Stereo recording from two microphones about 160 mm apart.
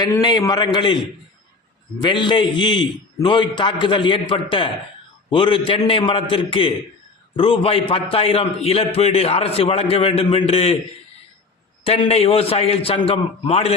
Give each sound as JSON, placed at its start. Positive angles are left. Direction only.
{"t": 0.0, "sound": "a man's voice", "side_deg": 25}
{"t": 2.0, "sound": "a man's voice", "side_deg": 30}
{"t": 11.8, "sound": "a man's voice", "side_deg": 35}